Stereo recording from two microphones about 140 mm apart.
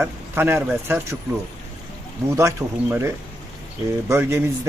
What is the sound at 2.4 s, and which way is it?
A man's voice, 20° right (ahead or behind).